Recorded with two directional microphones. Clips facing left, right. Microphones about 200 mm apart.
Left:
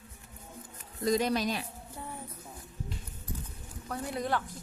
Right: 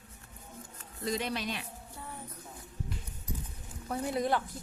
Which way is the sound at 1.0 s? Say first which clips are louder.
Left 6 dB; 40° left (ahead or behind).